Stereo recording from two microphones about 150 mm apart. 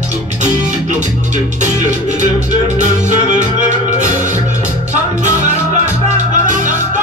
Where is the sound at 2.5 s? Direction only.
55° right (ahead or behind).